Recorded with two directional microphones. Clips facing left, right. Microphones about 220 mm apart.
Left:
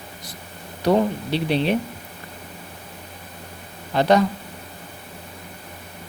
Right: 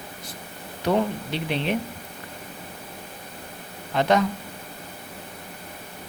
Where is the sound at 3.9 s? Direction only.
35° left (ahead or behind).